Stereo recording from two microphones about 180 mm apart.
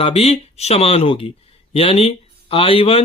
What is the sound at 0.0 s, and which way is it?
Speech, 35° left (ahead or behind).